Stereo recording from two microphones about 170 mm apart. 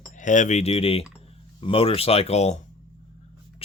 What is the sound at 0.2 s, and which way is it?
Speech, 45° left (ahead or behind).